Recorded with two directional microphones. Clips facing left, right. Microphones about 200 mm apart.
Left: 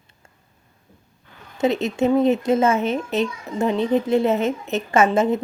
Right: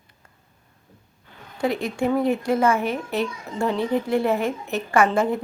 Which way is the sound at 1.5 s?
20° left (ahead or behind).